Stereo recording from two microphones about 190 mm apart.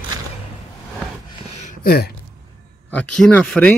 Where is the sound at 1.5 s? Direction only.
45° left (ahead or behind).